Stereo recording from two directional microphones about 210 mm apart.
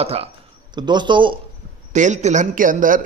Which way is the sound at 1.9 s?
35° right (ahead or behind).